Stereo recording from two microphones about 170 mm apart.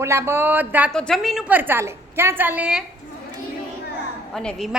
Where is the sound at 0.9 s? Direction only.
5° left (ahead or behind).